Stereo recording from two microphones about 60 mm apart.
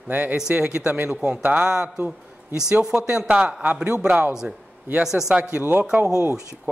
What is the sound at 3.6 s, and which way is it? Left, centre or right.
Speech, right.